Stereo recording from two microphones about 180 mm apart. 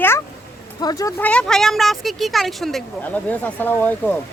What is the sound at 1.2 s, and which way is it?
Speech, 5° left (ahead or behind).